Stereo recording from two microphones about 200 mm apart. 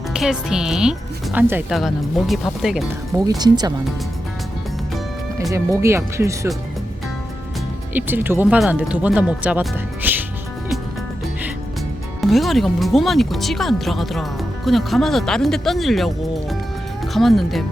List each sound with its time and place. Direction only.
0.1 s speech: 5° right (ahead or behind)
3.2 s speech: 20° right (ahead or behind)
5.4 s speech: 15° right (ahead or behind)
7.9 s speech: 10° right (ahead or behind)
12.2 s speech: centre (ahead or behind)